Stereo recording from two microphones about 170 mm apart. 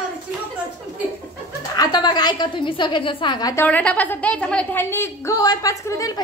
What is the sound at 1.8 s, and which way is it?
A woman's voice, 25° left (ahead or behind).